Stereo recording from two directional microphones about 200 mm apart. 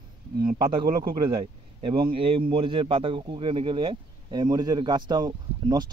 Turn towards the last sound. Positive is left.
turn(degrees=-20)  # may be behind; listen again after turning